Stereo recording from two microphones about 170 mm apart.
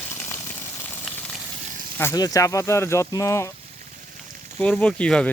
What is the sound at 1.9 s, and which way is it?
Speech, 15° left (ahead or behind).